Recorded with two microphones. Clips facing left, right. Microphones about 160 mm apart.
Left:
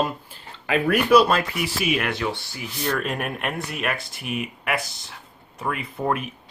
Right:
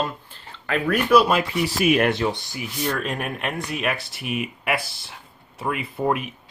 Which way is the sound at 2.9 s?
Centre (ahead or behind).